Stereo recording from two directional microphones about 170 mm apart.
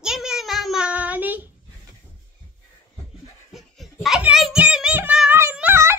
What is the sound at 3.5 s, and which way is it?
Child singing, centre (ahead or behind).